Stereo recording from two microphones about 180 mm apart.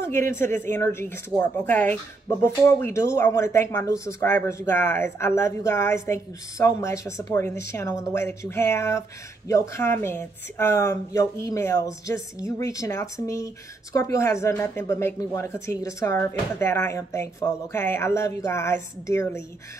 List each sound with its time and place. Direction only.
0.0 s speech: 15° left (ahead or behind)